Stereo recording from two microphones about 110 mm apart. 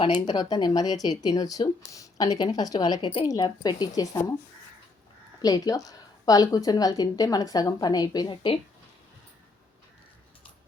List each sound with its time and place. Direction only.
0.3 s a woman's voice: 40° left (ahead or behind)
5.4 s a woman's voice: 35° left (ahead or behind)